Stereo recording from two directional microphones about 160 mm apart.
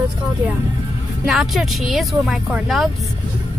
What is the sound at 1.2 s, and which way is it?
Speech, centre (ahead or behind).